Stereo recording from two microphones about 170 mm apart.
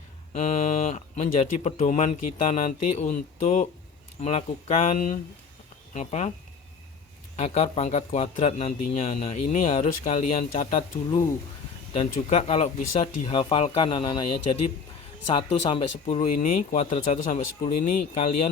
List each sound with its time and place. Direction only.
0.3 s a man's voice: 40° left (ahead or behind)
7.3 s a man's voice: 40° left (ahead or behind)
11.9 s speech: 40° left (ahead or behind)